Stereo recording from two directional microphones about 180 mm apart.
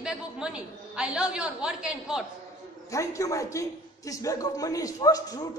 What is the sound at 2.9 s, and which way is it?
A man's voice, 15° left (ahead or behind).